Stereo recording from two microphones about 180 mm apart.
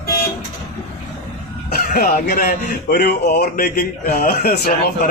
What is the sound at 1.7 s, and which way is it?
A man's voice, 50° left (ahead or behind).